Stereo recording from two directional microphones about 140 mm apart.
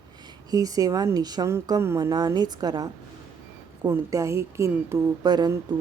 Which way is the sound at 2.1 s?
30° right (ahead or behind).